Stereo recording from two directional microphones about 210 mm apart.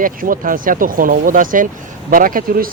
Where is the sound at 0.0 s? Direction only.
40° right (ahead or behind).